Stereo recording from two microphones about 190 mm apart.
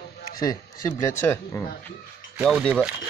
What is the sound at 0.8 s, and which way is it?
Speech, 15° left (ahead or behind).